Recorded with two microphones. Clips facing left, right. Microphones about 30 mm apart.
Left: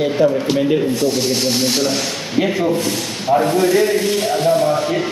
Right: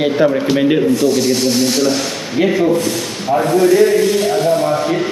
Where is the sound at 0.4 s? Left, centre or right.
Right.